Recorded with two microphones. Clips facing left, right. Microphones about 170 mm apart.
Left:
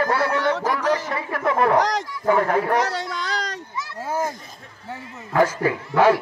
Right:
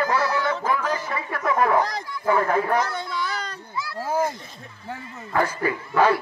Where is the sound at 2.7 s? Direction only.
75° left (ahead or behind).